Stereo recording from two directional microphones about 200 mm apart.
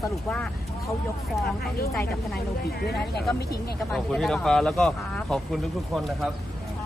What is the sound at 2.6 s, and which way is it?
Speech, 50° left (ahead or behind).